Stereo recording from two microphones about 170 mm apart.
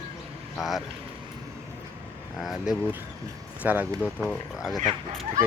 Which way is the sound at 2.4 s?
Centre (ahead or behind).